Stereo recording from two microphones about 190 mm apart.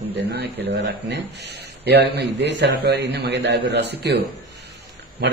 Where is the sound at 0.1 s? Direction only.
60° right (ahead or behind).